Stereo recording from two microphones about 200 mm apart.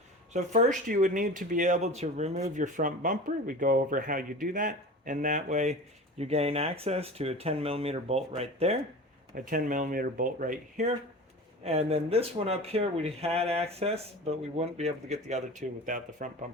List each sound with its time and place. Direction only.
0.3 s speech: 35° right (ahead or behind)
9.3 s speech: 45° right (ahead or behind)